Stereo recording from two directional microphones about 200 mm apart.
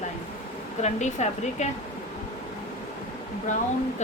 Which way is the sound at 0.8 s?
35° left (ahead or behind).